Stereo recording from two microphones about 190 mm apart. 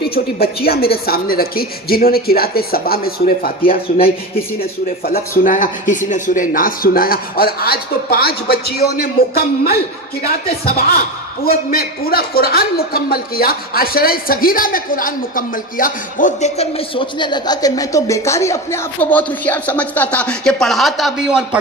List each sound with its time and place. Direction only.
0.0 s speech: 55° left (ahead or behind)
5.4 s a man's voice: 45° left (ahead or behind); by 21.6 s 5° right (ahead or behind)